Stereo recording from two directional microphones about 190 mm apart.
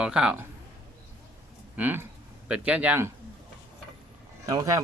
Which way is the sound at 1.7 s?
10° right (ahead or behind).